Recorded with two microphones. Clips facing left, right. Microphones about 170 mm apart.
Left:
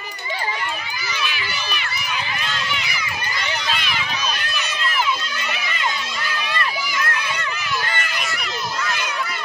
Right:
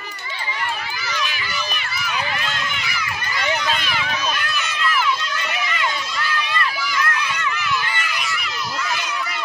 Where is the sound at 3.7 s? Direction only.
45° right (ahead or behind).